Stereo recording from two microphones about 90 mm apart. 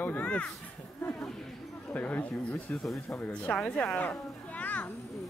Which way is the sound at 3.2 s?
15° left (ahead or behind).